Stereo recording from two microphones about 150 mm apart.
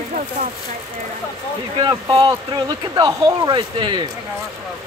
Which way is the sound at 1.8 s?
30° right (ahead or behind).